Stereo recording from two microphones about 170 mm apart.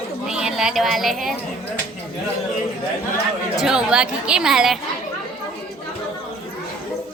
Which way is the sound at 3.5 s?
5° right (ahead or behind).